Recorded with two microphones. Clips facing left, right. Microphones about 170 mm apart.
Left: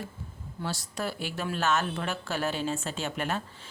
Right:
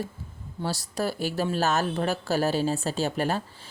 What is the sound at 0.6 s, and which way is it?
Speech, 35° right (ahead or behind).